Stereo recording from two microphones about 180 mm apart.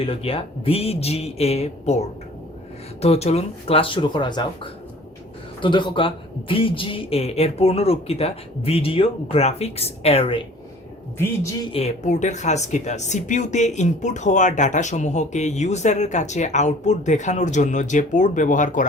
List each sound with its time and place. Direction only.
0.0 s speech: 30° left (ahead or behind)
11.7 s speech: 40° left (ahead or behind)